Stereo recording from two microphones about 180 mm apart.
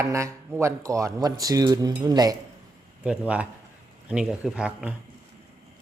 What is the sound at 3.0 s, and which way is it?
Speech, 5° right (ahead or behind).